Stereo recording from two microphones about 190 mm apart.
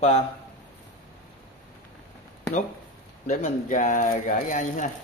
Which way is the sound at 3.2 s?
40° left (ahead or behind).